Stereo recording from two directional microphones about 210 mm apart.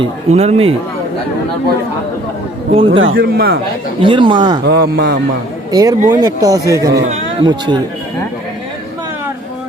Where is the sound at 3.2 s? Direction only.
50° right (ahead or behind).